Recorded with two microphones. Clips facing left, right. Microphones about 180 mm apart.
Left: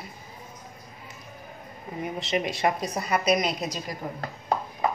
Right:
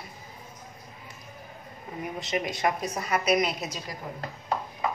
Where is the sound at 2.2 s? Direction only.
25° left (ahead or behind).